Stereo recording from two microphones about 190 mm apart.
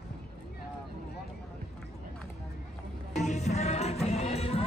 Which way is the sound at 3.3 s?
35° left (ahead or behind).